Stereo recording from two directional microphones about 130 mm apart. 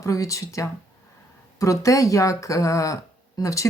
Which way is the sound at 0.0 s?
25° left (ahead or behind).